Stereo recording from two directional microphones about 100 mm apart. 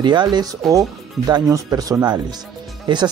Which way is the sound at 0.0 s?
50° right (ahead or behind).